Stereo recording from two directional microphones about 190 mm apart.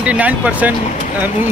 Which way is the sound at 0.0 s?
5° right (ahead or behind).